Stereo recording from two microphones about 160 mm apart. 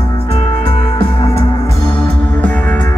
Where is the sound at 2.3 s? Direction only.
10° left (ahead or behind).